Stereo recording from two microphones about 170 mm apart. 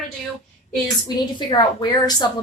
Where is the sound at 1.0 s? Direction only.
25° left (ahead or behind).